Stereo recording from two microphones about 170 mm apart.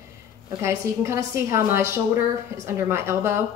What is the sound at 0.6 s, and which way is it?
A woman's voice, 15° right (ahead or behind).